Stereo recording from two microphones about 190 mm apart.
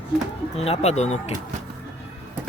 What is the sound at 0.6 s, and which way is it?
Speech, 35° left (ahead or behind).